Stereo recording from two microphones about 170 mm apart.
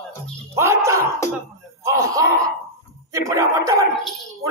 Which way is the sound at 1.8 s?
20° right (ahead or behind).